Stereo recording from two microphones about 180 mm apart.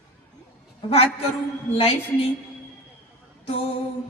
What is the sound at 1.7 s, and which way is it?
Speech, 30° left (ahead or behind).